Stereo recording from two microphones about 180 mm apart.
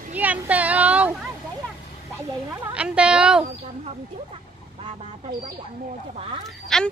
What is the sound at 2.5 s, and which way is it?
Speech, 5° right (ahead or behind).